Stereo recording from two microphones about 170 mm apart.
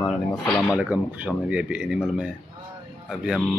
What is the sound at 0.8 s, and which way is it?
Speech, 10° right (ahead or behind).